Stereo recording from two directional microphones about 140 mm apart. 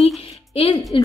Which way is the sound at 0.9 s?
35° left (ahead or behind).